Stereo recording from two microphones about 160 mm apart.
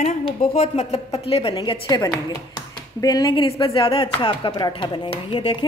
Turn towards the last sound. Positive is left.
turn(degrees=30)  # may be behind; listen again after turning